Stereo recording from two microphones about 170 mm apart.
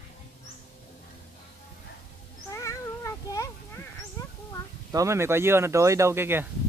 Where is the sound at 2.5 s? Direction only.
15° left (ahead or behind).